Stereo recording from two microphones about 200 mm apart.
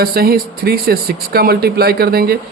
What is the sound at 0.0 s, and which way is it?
Speech, 50° right (ahead or behind).